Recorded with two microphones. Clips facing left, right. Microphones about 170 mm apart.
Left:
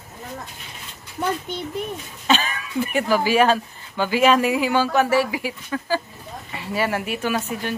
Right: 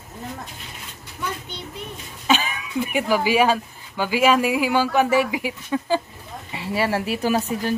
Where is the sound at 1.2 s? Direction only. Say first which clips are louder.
Left 6 dB; 55° left (ahead or behind).